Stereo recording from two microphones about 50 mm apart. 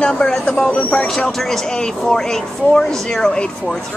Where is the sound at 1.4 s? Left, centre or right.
Centre.